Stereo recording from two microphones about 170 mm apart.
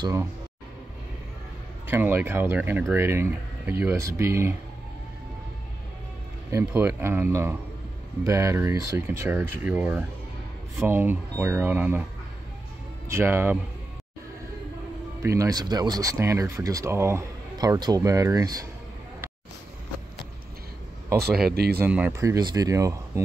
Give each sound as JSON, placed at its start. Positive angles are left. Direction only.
{"t": 0.0, "sound": "speech", "side_deg": -20}
{"t": 1.9, "sound": "speech", "side_deg": -10}
{"t": 6.5, "sound": "speech", "side_deg": -15}
{"t": 13.1, "sound": "speech", "side_deg": -15}
{"t": 15.2, "sound": "speech", "side_deg": -20}
{"t": 21.2, "sound": "speech", "side_deg": -65}
{"t": 21.7, "sound": "speech", "side_deg": -10}